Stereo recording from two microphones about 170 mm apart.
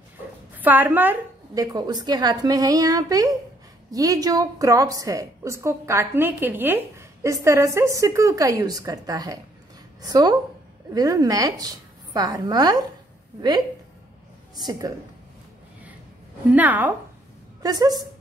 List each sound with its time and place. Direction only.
0.6 s a woman's voice: 10° right (ahead or behind)
1.5 s a woman's voice: 20° right (ahead or behind)
14.5 s a woman's voice: 25° right (ahead or behind)
16.4 s a woman's voice: 10° right (ahead or behind)
17.6 s a woman's voice: 20° right (ahead or behind)